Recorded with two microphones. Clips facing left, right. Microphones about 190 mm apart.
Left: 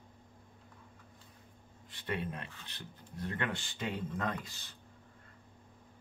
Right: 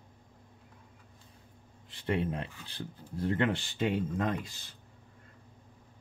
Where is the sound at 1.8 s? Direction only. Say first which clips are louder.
Right 6 dB; 30° right (ahead or behind).